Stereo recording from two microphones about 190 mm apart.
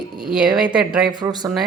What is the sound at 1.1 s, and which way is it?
Speech, 20° right (ahead or behind).